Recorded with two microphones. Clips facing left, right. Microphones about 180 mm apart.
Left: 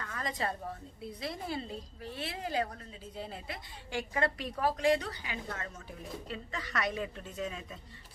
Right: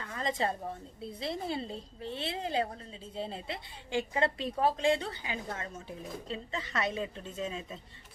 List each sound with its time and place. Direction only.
0.0 s a woman's voice: 25° right (ahead or behind)